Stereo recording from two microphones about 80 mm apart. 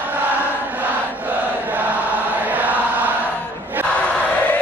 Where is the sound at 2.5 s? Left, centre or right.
Right.